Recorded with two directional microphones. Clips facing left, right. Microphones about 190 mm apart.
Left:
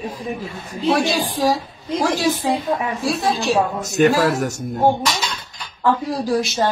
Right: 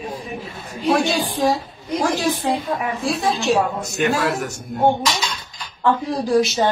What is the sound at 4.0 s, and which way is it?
Speech, 40° left (ahead or behind).